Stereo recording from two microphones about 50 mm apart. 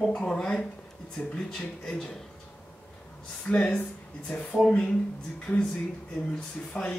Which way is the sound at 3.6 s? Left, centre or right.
Centre.